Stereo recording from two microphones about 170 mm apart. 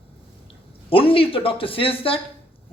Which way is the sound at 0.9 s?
30° left (ahead or behind).